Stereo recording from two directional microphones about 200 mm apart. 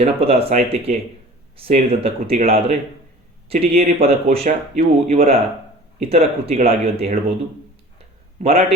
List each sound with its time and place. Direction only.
0.0 s speech: 30° right (ahead or behind)
8.4 s a man's voice: 30° right (ahead or behind)